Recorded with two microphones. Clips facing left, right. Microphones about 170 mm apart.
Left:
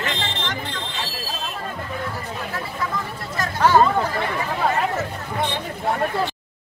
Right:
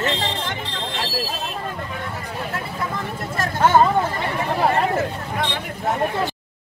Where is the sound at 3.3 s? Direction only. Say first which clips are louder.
Even; 25° right (ahead or behind).